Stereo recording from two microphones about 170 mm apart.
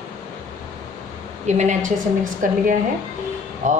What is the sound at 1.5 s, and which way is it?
A woman's voice, 45° right (ahead or behind).